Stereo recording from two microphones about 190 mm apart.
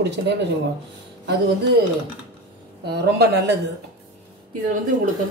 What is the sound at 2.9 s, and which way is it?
Speech, 60° right (ahead or behind).